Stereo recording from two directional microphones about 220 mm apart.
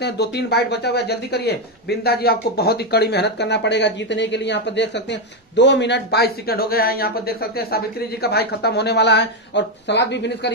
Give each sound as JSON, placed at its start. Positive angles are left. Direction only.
{"t": 0.0, "sound": "speech", "side_deg": 50}